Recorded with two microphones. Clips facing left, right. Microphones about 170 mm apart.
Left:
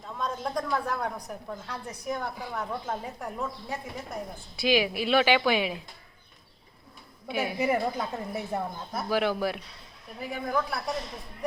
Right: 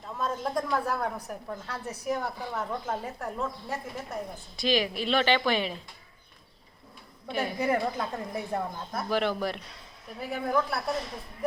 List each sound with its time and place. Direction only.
0.2 s a woman's voice: 5° right (ahead or behind)
7.3 s a woman's voice: 10° left (ahead or behind)